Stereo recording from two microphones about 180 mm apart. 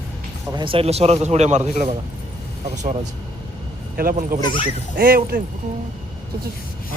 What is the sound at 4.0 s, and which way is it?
Speech, 50° right (ahead or behind).